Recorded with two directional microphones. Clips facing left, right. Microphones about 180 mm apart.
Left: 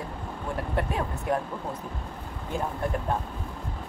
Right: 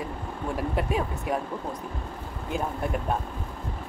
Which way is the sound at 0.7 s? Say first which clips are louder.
Right 1 dB; 10° right (ahead or behind).